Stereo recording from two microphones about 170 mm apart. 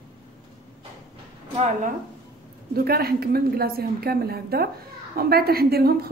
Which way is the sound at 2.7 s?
65° right (ahead or behind).